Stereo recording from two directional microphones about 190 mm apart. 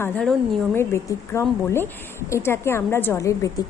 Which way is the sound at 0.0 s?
5° left (ahead or behind).